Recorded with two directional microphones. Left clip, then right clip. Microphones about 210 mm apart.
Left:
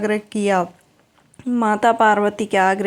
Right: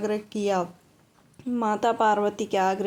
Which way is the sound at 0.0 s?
15° left (ahead or behind).